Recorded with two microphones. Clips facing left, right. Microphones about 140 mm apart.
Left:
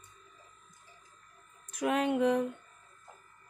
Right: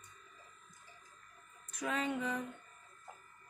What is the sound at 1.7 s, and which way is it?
Speech, 65° left (ahead or behind).